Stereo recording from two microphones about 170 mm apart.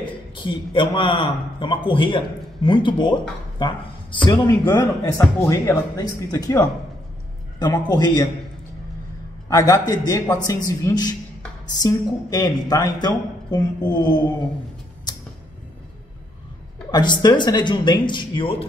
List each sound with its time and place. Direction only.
0.4 s a man's voice: 30° left (ahead or behind)
9.5 s a man's voice: 20° left (ahead or behind)
16.9 s a man's voice: 25° left (ahead or behind)